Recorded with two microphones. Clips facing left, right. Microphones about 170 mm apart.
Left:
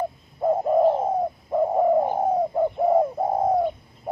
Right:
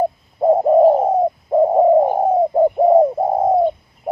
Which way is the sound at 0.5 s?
35° right (ahead or behind).